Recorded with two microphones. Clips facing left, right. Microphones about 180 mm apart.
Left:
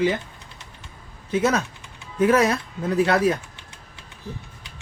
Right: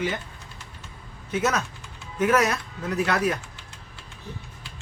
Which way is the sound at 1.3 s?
30° left (ahead or behind).